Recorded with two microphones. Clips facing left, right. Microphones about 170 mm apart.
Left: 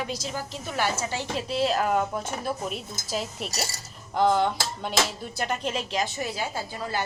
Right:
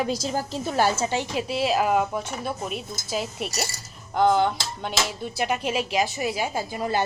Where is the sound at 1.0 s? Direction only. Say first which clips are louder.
Right 4 dB; 20° right (ahead or behind).